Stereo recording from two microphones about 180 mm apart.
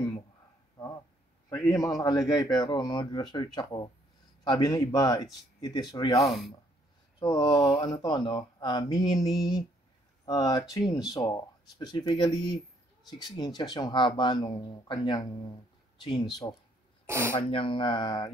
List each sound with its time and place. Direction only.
1.7 s speech: 20° left (ahead or behind)
6.2 s speech: centre (ahead or behind)
7.2 s speech: 25° left (ahead or behind)
17.0 s speech: 15° right (ahead or behind)
17.4 s speech: 30° left (ahead or behind)